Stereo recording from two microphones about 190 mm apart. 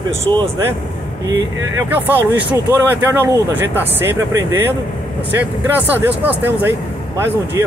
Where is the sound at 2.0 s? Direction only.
10° right (ahead or behind).